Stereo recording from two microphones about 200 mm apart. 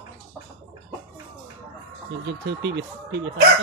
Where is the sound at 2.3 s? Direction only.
60° right (ahead or behind).